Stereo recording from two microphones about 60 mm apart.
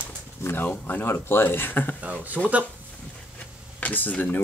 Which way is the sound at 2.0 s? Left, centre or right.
Right.